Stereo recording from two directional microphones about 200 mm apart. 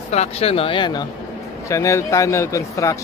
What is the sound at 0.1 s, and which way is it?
A man's voice, 30° left (ahead or behind).